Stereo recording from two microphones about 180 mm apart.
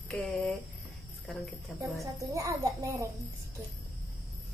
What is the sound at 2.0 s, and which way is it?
A child's voice, 15° right (ahead or behind).